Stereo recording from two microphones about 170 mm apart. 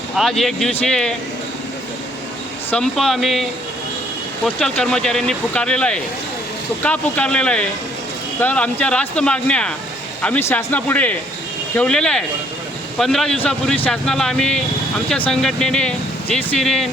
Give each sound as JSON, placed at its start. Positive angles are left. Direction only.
{"t": 0.2, "sound": "speech", "side_deg": 0}
{"t": 2.6, "sound": "speech", "side_deg": 5}
{"t": 4.4, "sound": "speech", "side_deg": 5}